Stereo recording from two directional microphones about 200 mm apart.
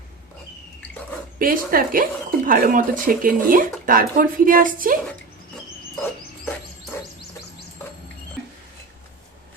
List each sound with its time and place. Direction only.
1.4 s speech: 45° right (ahead or behind)